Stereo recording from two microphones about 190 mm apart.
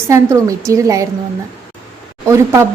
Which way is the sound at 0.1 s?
15° right (ahead or behind).